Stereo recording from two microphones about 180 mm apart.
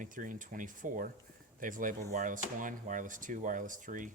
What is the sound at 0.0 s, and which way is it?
Speech, 45° right (ahead or behind).